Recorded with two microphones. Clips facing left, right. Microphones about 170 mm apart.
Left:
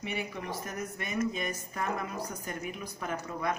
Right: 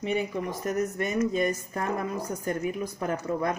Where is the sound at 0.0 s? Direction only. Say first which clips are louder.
Right 8 dB; 45° right (ahead or behind).